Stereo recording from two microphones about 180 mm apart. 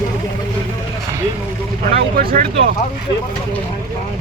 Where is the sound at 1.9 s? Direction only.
55° right (ahead or behind).